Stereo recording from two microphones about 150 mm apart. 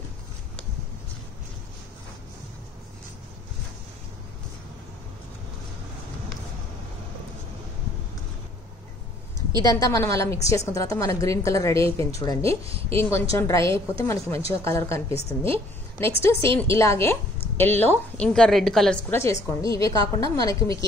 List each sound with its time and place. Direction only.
9.6 s a woman's voice: 20° left (ahead or behind)
12.4 s speech: 40° right (ahead or behind)
12.9 s a woman's voice: 20° left (ahead or behind)
15.4 s a woman's voice: 40° right (ahead or behind)
16.1 s a woman's voice: 20° left (ahead or behind); by 18.9 s centre (ahead or behind)
19.0 s a woman's voice: 15° left (ahead or behind)